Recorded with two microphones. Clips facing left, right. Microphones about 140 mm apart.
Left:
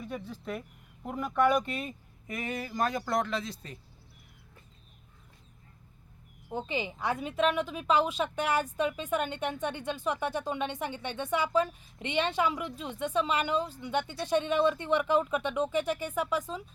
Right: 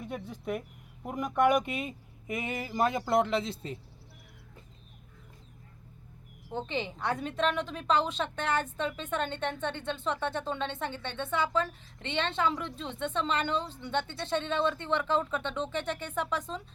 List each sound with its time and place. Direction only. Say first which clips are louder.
0.0 s speech: right 1 dB; 20° right (ahead or behind)
6.5 s a woman's voice: even; 5° left (ahead or behind)